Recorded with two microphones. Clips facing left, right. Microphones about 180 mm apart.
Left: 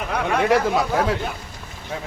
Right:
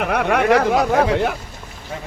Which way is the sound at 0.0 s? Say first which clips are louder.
Right 4 dB; 65° right (ahead or behind).